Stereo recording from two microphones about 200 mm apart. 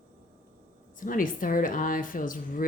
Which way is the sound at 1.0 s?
45° left (ahead or behind).